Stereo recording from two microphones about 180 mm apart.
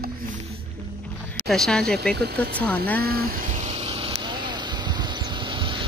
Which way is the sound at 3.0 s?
55° right (ahead or behind).